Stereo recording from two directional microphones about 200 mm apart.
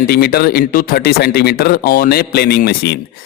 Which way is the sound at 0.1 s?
50° left (ahead or behind).